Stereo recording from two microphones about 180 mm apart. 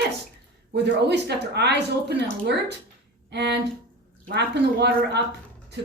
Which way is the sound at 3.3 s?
70° right (ahead or behind).